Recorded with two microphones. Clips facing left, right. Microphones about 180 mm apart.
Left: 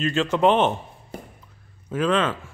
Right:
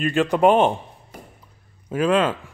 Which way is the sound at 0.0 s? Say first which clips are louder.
Right 2 dB; 15° right (ahead or behind).